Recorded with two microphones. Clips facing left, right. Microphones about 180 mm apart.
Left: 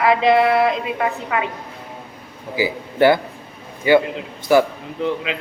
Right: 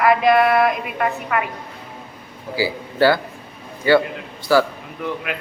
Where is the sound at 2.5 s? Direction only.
20° left (ahead or behind).